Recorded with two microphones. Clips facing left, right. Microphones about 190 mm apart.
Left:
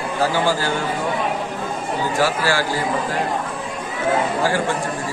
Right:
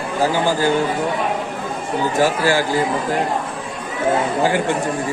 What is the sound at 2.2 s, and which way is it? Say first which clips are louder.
Speech: right 3 dB; 15° right (ahead or behind).